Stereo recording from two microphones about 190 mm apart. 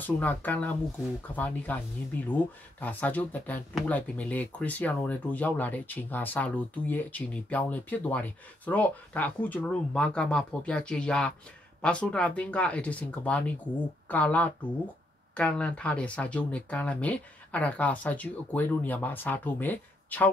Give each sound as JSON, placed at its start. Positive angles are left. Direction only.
{"t": 0.0, "sound": "speech", "side_deg": 10}